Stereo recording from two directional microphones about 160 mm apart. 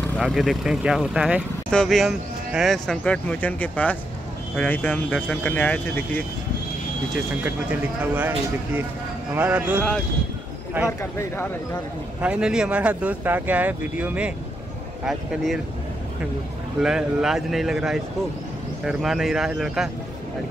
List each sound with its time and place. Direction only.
0.0 s speech: 5° left (ahead or behind)
8.0 s speech: 10° right (ahead or behind)
9.3 s speech: 10° right (ahead or behind)
10.9 s speech: 15° left (ahead or behind)
12.2 s speech: 5° right (ahead or behind)
16.8 s speech: 5° right (ahead or behind)